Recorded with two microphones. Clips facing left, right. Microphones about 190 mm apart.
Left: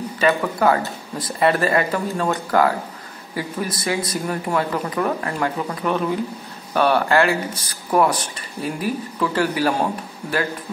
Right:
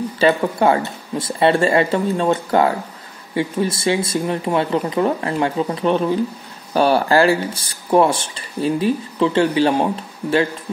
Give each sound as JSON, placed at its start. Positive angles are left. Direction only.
{"t": 0.2, "sound": "speech", "side_deg": -25}